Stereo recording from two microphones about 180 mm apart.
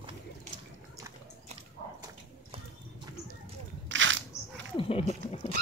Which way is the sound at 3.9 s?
90° right.